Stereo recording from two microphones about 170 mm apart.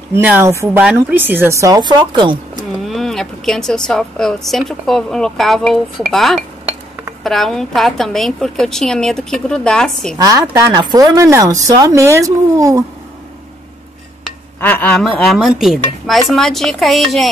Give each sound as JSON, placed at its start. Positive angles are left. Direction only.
{"t": 0.1, "sound": "speech", "side_deg": -15}
{"t": 2.9, "sound": "speech", "side_deg": 0}
{"t": 10.1, "sound": "speech", "side_deg": -20}
{"t": 14.6, "sound": "speech", "side_deg": 10}